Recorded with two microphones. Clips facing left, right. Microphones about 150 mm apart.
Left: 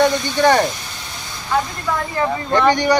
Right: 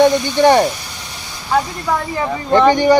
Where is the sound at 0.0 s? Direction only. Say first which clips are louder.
Right 4 dB; 15° right (ahead or behind).